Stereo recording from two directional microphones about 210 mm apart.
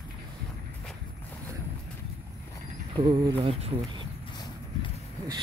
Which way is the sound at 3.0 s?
25° right (ahead or behind).